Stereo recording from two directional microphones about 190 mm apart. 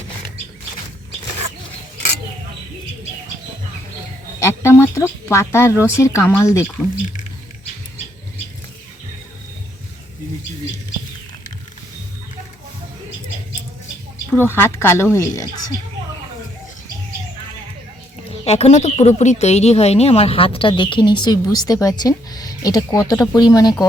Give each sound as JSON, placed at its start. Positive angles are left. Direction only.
{"t": 4.4, "sound": "speech", "side_deg": 15}
{"t": 14.3, "sound": "speech", "side_deg": 10}
{"t": 18.3, "sound": "speech", "side_deg": 35}